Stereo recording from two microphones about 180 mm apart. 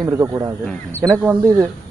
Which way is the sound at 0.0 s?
20° right (ahead or behind).